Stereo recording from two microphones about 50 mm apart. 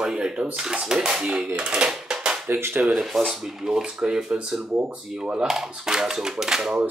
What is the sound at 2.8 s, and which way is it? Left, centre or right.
Speech, centre.